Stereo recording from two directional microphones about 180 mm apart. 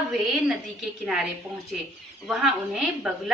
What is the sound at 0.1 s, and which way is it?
A woman's voice, centre (ahead or behind).